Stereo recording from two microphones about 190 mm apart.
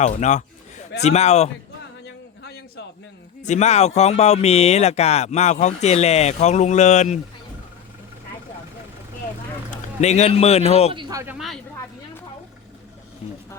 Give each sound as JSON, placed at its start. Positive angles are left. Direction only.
{"t": 0.0, "sound": "speech", "side_deg": 40}
{"t": 2.4, "sound": "a sound", "side_deg": 60}
{"t": 3.4, "sound": "speech", "side_deg": 35}
{"t": 10.0, "sound": "speech", "side_deg": 35}
{"t": 10.9, "sound": "speech", "side_deg": -20}
{"t": 11.3, "sound": "speech", "side_deg": 0}